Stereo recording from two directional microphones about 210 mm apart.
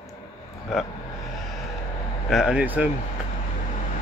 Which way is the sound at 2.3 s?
5° right (ahead or behind).